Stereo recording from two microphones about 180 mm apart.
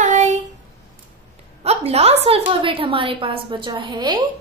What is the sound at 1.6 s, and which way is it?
A woman's voice, 35° right (ahead or behind).